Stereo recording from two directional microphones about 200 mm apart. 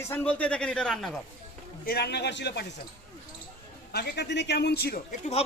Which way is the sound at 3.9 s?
55° left (ahead or behind).